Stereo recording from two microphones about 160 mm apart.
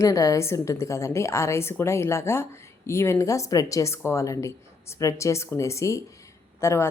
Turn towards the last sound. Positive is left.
turn(degrees=15)  # may be behind; listen again after turning